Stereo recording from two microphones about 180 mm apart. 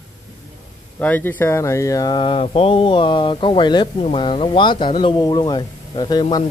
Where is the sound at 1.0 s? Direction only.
10° left (ahead or behind).